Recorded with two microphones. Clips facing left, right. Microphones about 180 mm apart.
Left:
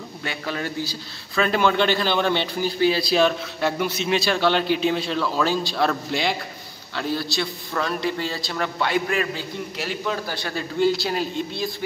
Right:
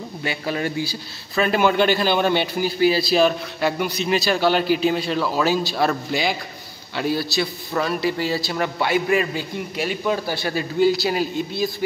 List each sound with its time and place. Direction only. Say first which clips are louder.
0.2 s a man's voice: right 4 dB; 10° right (ahead or behind)